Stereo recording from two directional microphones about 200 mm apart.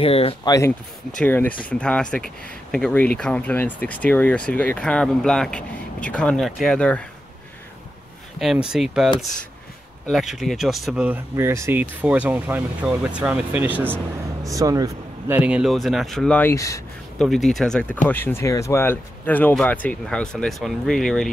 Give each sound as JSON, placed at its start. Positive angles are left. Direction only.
{"t": 0.0, "sound": "speech", "side_deg": 30}
{"t": 1.2, "sound": "speech", "side_deg": 10}
{"t": 8.4, "sound": "speech", "side_deg": -5}
{"t": 17.2, "sound": "speech", "side_deg": 0}